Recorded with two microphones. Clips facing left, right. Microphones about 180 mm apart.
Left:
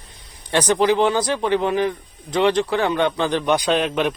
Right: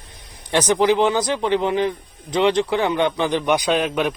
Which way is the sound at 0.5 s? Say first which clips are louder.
Even; 15° right (ahead or behind).